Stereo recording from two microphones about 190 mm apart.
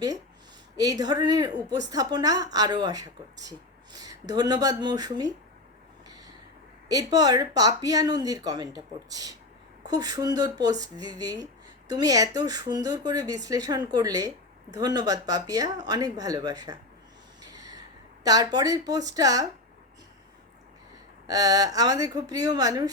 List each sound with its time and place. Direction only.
0.8 s speech: 20° right (ahead or behind)
6.8 s speech: 20° right (ahead or behind)
17.4 s a sound: 20° right (ahead or behind)
21.2 s speech: 20° right (ahead or behind)